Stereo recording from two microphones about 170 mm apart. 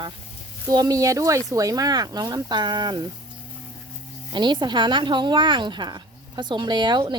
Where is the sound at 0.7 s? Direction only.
20° right (ahead or behind).